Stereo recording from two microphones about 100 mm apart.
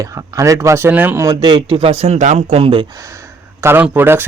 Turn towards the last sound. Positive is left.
turn(degrees=-20)  # may be behind; listen again after turning